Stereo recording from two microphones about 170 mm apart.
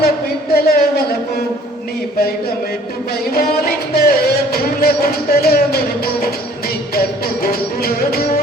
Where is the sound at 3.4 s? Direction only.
65° left (ahead or behind).